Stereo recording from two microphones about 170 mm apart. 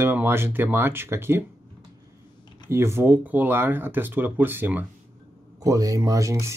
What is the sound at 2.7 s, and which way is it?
Speech, 15° right (ahead or behind).